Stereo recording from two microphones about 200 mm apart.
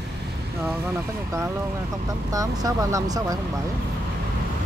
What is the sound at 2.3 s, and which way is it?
Speech, 15° right (ahead or behind).